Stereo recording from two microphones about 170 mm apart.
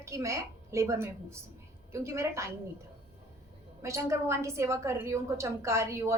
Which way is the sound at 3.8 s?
15° right (ahead or behind).